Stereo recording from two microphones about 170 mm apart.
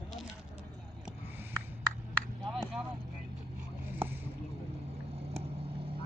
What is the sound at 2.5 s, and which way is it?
Vehicle, 5° right (ahead or behind).